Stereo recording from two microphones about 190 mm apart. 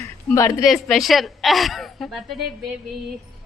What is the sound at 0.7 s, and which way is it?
A woman's voice, centre (ahead or behind).